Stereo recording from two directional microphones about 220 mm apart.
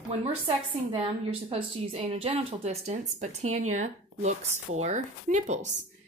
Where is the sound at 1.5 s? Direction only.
25° right (ahead or behind).